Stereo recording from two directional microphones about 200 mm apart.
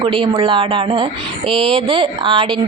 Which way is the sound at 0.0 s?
25° right (ahead or behind).